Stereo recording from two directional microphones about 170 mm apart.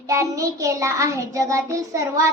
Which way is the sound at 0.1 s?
20° right (ahead or behind).